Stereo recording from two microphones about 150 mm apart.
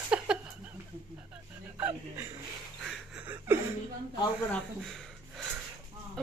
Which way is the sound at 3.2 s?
10° right (ahead or behind).